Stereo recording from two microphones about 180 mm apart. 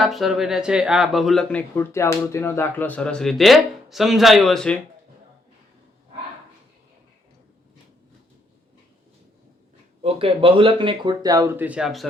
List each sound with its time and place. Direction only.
0.0 s speech: centre (ahead or behind)
1.7 s speech: 15° left (ahead or behind)
10.0 s speech: 35° right (ahead or behind); by 12.0 s centre (ahead or behind)